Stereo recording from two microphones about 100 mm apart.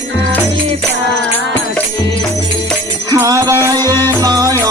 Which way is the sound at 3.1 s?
35° right (ahead or behind).